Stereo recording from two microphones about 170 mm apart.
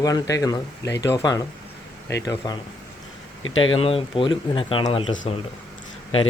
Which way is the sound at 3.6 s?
30° left (ahead or behind).